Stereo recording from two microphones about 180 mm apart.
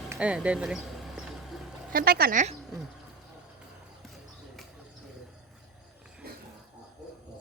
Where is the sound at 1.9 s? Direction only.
55° right (ahead or behind).